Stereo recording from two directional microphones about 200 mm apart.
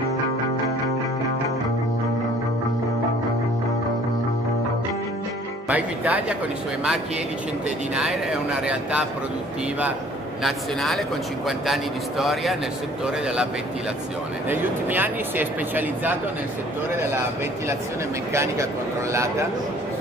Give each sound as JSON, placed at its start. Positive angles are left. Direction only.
{"t": 5.7, "sound": "speech", "side_deg": -10}
{"t": 7.9, "sound": "a man's voice", "side_deg": -5}
{"t": 10.4, "sound": "a man's voice", "side_deg": 0}
{"t": 14.5, "sound": "speech", "side_deg": -10}
{"t": 18.3, "sound": "speech", "side_deg": -15}